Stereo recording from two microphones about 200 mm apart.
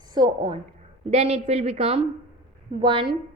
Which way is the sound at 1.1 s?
35° right (ahead or behind).